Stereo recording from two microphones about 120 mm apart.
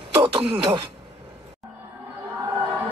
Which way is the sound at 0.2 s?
50° right (ahead or behind).